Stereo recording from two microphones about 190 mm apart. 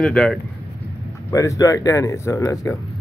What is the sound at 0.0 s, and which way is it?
Speech, centre (ahead or behind).